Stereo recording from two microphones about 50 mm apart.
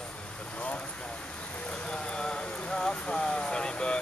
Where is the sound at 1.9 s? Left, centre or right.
Centre.